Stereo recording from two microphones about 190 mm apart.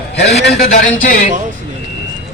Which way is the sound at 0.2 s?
60° left (ahead or behind).